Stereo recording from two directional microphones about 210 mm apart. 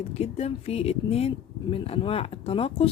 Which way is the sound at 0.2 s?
30° left (ahead or behind).